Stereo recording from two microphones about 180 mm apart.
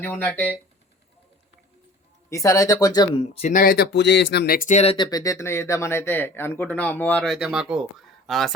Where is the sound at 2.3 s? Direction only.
15° left (ahead or behind).